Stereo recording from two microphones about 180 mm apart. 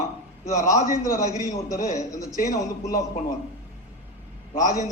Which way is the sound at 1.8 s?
40° left (ahead or behind).